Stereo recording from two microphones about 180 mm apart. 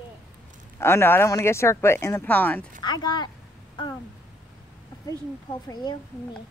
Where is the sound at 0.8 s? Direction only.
15° left (ahead or behind).